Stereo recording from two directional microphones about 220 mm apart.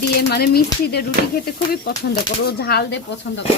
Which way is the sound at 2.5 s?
45° left (ahead or behind).